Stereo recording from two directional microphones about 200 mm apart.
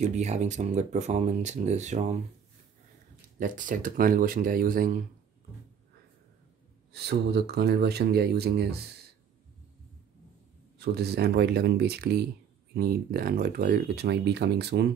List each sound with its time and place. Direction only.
0.0 s speech: 35° right (ahead or behind)
3.3 s speech: 40° right (ahead or behind)
6.9 s speech: 55° right (ahead or behind)
10.8 s speech: 55° right (ahead or behind)